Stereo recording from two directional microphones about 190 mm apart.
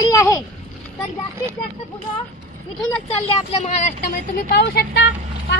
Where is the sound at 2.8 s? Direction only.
30° left (ahead or behind).